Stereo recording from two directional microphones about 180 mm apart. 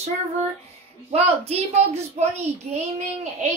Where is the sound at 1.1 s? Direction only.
35° right (ahead or behind).